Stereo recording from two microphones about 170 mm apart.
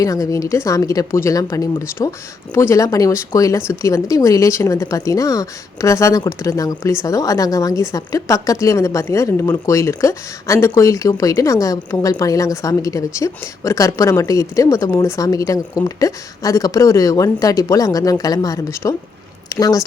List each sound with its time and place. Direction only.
0.0 s speech: 20° left (ahead or behind)